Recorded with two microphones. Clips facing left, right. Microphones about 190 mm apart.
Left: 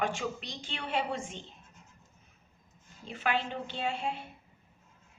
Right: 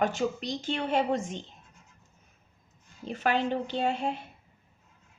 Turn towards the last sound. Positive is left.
turn(degrees=-40)  # may be behind; listen again after turning